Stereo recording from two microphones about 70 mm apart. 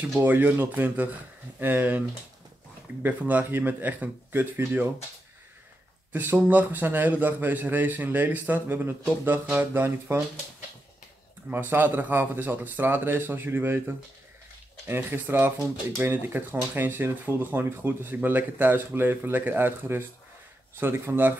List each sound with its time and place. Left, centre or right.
0.2 s speech: right
6.1 s speech: right
11.5 s speech: right